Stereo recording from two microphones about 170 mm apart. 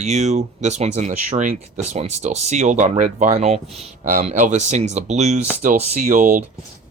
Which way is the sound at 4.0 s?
55° right (ahead or behind).